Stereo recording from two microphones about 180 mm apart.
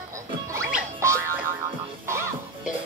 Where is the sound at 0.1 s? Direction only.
15° right (ahead or behind).